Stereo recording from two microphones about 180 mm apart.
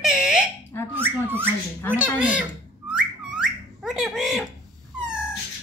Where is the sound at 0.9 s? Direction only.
10° right (ahead or behind).